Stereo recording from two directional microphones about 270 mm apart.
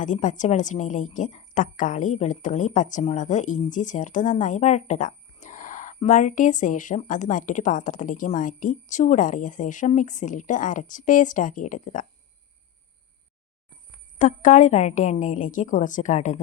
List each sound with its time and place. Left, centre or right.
0.0 s a woman's voice: left
14.2 s a woman's voice: left